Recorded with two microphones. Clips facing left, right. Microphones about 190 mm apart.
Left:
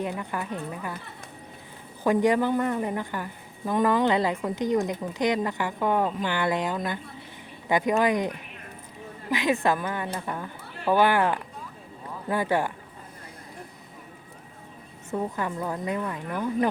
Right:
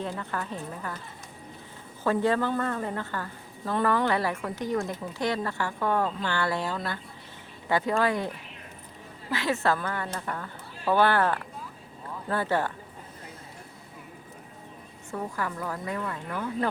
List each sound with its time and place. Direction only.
0.2 s a woman's voice: 15° left (ahead or behind)
2.0 s a woman's voice: 15° left (ahead or behind)
15.1 s a woman's voice: 20° left (ahead or behind)